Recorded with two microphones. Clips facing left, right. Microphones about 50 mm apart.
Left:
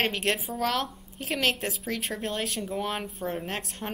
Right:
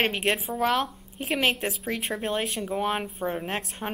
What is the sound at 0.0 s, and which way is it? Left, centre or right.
A woman's voice, centre.